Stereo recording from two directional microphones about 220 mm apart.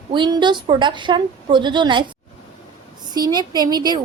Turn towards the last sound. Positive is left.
turn(degrees=-20)  # may be behind; listen again after turning